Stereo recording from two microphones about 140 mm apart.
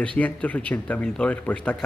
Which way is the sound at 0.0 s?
10° left (ahead or behind).